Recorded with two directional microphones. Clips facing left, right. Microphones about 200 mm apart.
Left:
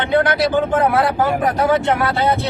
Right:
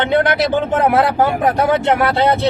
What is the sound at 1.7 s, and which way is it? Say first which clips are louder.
Speech: right 2 dB; 25° right (ahead or behind).